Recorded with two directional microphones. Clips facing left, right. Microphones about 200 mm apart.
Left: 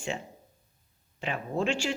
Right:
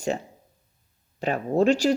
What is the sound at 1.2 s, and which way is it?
Speech, 40° right (ahead or behind).